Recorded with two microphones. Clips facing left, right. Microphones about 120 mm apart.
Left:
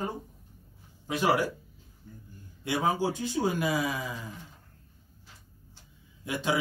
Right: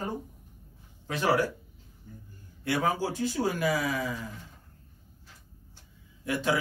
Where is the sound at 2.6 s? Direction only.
20° left (ahead or behind).